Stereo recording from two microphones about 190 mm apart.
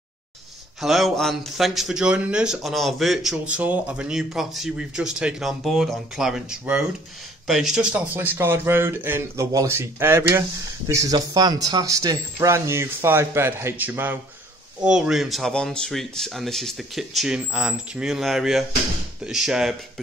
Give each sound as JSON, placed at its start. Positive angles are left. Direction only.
{"t": 0.7, "sound": "speech", "side_deg": 0}